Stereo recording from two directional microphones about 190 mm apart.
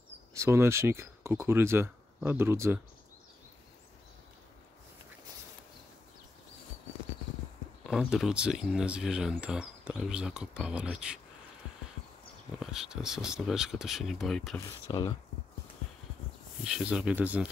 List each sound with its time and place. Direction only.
0.4 s speech: 15° right (ahead or behind)
7.8 s speech: centre (ahead or behind)
12.5 s speech: 5° right (ahead or behind)
14.6 s speech: 20° left (ahead or behind)
16.6 s speech: 5° right (ahead or behind)